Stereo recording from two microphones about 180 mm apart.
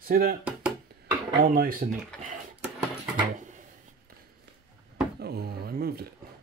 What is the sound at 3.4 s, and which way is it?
Drawer open or close, 45° right (ahead or behind).